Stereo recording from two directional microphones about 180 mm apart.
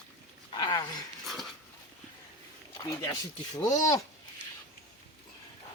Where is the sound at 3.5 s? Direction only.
20° left (ahead or behind).